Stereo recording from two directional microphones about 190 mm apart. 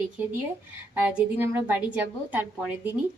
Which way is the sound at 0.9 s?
10° right (ahead or behind).